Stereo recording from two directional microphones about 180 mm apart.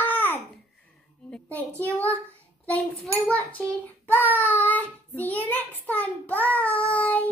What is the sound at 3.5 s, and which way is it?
Child singing, 10° left (ahead or behind).